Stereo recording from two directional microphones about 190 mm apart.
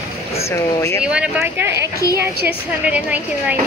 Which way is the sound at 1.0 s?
5° right (ahead or behind).